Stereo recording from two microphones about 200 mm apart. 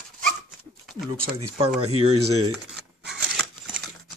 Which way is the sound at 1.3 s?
30° right (ahead or behind).